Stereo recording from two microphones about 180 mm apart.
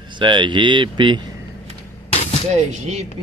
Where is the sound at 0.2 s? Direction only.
25° right (ahead or behind).